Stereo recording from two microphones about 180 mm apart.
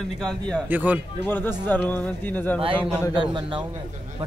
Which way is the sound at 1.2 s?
10° left (ahead or behind).